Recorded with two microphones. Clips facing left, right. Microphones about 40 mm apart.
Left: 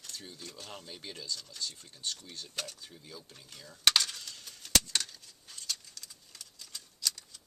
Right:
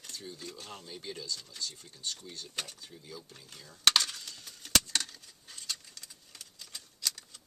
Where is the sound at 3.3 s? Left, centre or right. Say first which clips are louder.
Even; centre.